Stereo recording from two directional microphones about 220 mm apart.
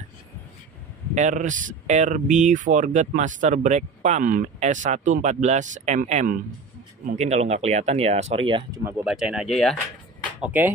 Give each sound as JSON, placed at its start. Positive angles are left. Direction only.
{"t": 1.1, "sound": "speech", "side_deg": -35}
{"t": 8.8, "sound": "speech", "side_deg": -5}